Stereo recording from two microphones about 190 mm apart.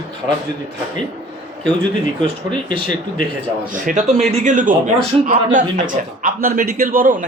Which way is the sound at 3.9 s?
40° right (ahead or behind).